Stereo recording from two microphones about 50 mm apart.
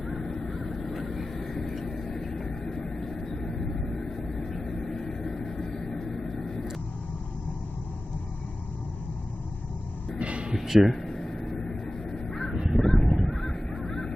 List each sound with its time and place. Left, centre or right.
0.0 s honk: centre
0.9 s vehicle: centre
10.2 s music: right
10.5 s a sound: centre
11.0 s a sound: centre
11.9 s crow: centre
12.3 s crow: centre
12.7 s honk: centre